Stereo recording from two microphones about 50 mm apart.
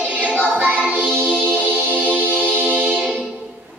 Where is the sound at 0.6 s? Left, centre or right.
Right.